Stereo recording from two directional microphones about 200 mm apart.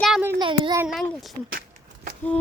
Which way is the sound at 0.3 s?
25° right (ahead or behind).